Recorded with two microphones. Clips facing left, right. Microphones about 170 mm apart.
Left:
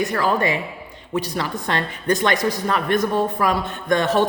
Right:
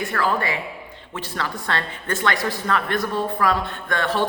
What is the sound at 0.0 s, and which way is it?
A woman's voice, 20° left (ahead or behind).